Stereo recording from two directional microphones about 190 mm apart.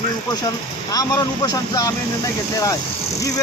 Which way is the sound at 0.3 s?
20° left (ahead or behind).